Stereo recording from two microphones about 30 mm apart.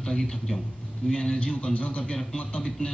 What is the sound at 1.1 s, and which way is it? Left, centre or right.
Speech, left.